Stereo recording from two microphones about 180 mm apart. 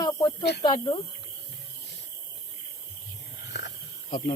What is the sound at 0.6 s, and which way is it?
Speech, 25° left (ahead or behind).